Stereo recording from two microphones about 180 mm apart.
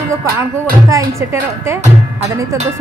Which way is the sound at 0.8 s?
15° right (ahead or behind).